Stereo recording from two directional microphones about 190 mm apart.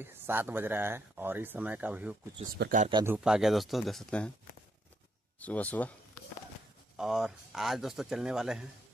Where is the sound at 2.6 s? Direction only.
60° right (ahead or behind).